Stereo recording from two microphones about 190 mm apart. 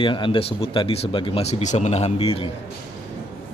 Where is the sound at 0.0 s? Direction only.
25° left (ahead or behind).